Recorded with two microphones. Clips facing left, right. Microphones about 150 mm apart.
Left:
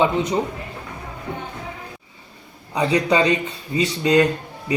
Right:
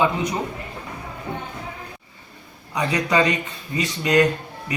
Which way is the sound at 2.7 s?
30° left (ahead or behind).